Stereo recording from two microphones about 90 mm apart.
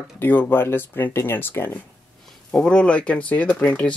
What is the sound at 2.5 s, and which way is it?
Speech, 10° left (ahead or behind).